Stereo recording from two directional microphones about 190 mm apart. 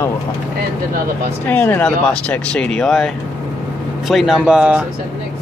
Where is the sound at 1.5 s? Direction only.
10° left (ahead or behind).